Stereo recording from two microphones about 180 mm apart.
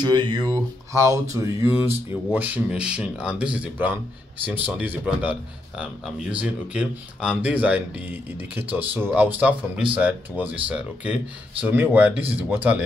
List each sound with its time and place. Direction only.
0.0 s speech: 25° right (ahead or behind); by 12.8 s 10° right (ahead or behind)